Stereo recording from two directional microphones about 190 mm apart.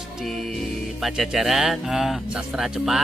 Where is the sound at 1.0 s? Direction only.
Centre (ahead or behind).